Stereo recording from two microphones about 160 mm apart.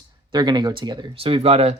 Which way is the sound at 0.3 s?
25° right (ahead or behind).